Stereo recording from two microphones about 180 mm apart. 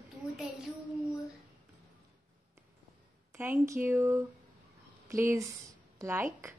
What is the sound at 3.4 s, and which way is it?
A child's voice, 15° right (ahead or behind).